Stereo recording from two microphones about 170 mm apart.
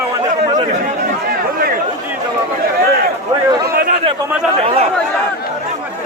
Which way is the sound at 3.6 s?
60° right (ahead or behind).